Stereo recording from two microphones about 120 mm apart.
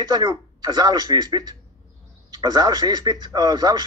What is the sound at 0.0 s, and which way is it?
Speech, 40° right (ahead or behind).